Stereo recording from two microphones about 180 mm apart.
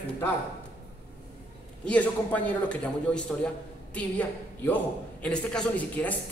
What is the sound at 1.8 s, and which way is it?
A man's voice, 10° left (ahead or behind).